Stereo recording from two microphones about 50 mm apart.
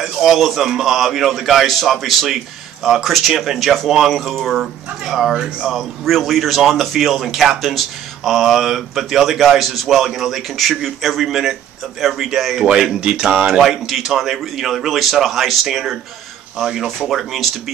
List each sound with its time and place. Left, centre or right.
0.0 s speech: centre